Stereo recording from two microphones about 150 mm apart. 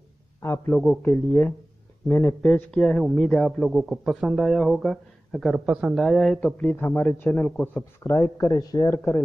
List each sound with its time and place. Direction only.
0.4 s a man's voice: 20° left (ahead or behind)
0.7 s a man's voice: 5° left (ahead or behind)